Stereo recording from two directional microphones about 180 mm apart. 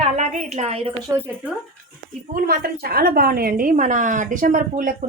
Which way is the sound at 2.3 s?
60° right (ahead or behind).